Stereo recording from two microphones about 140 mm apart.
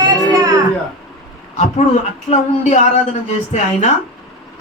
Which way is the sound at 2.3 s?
55° left (ahead or behind).